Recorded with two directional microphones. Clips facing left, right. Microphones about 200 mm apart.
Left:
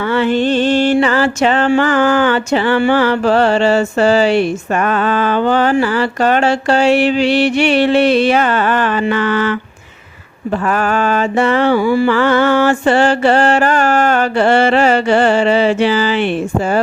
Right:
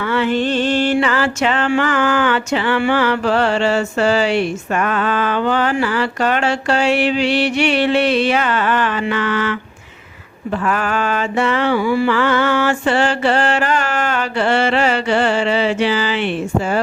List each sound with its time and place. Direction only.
0.8 s mantra: 35° left (ahead or behind)
10.7 s mantra: 40° left (ahead or behind)